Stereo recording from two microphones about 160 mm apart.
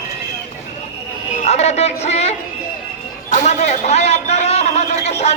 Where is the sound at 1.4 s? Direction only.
45° left (ahead or behind).